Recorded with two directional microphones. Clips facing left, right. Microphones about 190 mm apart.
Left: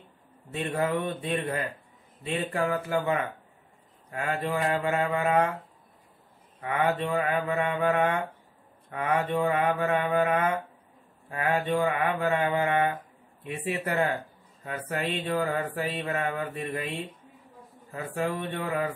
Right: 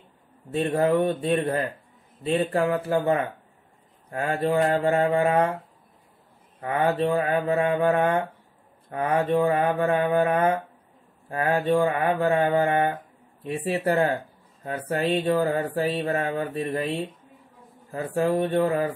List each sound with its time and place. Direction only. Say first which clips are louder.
0.5 s mantra: right 7 dB; 30° right (ahead or behind)
0.7 s mantra: right 6 dB; 40° right (ahead or behind)
6.6 s mantra: right 4 dB; 35° right (ahead or behind)